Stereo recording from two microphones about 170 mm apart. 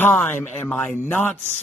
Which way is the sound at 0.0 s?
10° left (ahead or behind).